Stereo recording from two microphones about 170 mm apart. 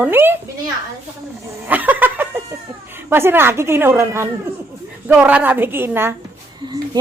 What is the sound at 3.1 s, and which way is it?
A woman's voice, 15° right (ahead or behind).